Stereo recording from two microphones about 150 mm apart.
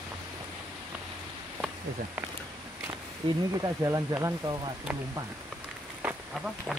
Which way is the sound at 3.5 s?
20° right (ahead or behind).